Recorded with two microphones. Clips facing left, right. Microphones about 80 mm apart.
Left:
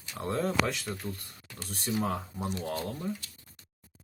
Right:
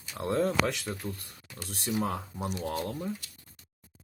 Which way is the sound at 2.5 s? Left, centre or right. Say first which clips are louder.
Right 1 dB; centre.